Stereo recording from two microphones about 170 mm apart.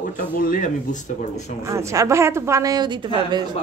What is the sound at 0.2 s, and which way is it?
Speech, 55° left (ahead or behind).